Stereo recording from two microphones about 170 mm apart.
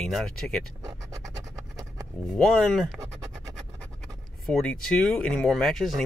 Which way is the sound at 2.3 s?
5° left (ahead or behind).